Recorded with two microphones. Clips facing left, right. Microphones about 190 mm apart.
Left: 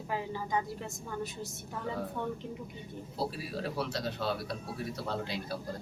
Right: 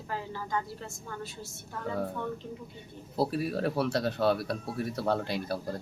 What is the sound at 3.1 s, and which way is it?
Speech, 60° right (ahead or behind).